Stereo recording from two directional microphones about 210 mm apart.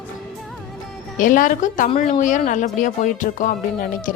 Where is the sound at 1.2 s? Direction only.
40° left (ahead or behind).